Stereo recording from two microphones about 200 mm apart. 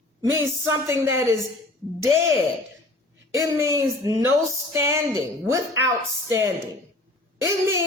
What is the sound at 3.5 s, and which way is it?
Speech, 15° right (ahead or behind).